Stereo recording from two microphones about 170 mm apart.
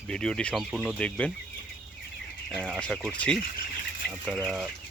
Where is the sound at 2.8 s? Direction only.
Centre (ahead or behind).